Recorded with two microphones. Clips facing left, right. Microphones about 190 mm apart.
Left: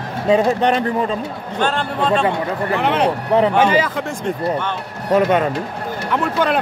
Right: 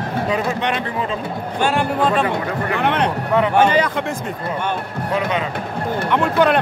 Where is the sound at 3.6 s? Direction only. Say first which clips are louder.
Even; 5° left (ahead or behind).